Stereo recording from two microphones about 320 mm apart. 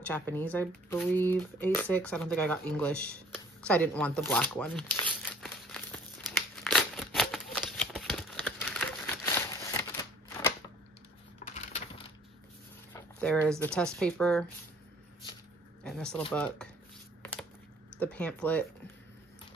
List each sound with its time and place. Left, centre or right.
0.0 s speech: centre
5.4 s crumpling: centre
11.4 s a sound: centre
12.9 s speech: centre
15.8 s speech: centre
17.9 s speech: centre